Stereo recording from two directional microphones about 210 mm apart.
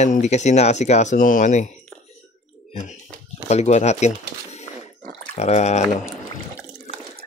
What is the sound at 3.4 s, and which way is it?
Speech, 30° left (ahead or behind).